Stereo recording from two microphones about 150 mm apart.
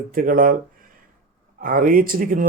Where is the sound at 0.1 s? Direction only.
65° right (ahead or behind).